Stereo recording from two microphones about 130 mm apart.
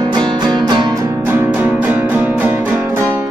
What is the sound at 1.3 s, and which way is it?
Music, 15° right (ahead or behind).